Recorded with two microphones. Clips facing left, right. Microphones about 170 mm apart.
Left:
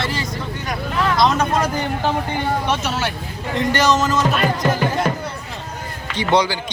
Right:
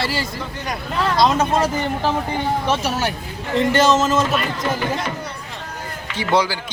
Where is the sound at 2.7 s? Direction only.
40° right (ahead or behind).